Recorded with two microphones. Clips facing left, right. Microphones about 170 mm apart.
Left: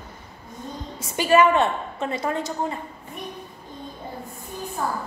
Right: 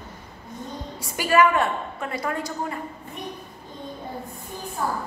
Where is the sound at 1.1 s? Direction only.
25° left (ahead or behind).